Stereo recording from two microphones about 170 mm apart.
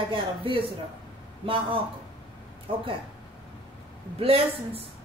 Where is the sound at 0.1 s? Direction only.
30° right (ahead or behind).